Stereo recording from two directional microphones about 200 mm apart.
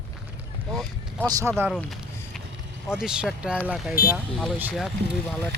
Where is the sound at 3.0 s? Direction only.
5° right (ahead or behind).